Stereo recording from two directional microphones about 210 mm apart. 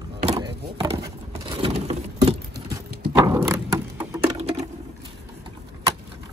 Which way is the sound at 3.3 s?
15° right (ahead or behind).